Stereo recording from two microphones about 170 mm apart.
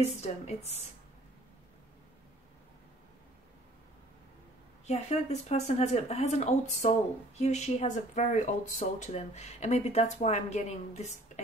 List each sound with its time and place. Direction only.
0.0 s speech: 40° left (ahead or behind)
4.8 s speech: 40° left (ahead or behind)